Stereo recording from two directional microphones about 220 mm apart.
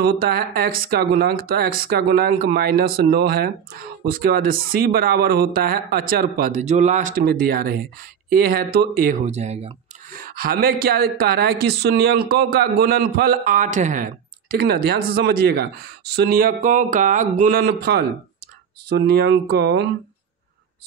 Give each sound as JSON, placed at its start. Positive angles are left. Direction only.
{"t": 0.0, "sound": "speech", "side_deg": -45}
{"t": 10.1, "sound": "speech", "side_deg": -40}